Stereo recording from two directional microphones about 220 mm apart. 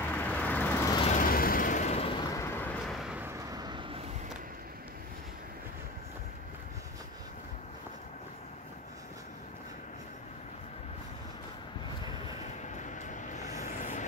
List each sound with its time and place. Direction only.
0.0 s vehicle: 10° left (ahead or behind)
0.9 s vehicle: 25° left (ahead or behind)
1.2 s vehicle: 40° left (ahead or behind)
2.3 s vehicle: 10° left (ahead or behind); by 4.0 s 20° right (ahead or behind)
12.8 s vehicle: 35° left (ahead or behind)